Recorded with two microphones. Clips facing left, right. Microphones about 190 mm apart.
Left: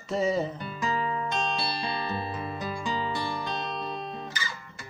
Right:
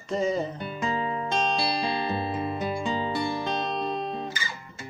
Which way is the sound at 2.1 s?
25° right (ahead or behind).